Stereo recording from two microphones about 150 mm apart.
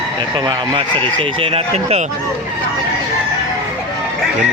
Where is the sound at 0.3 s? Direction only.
30° right (ahead or behind).